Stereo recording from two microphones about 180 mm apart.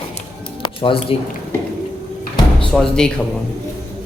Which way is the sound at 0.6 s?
30° left (ahead or behind).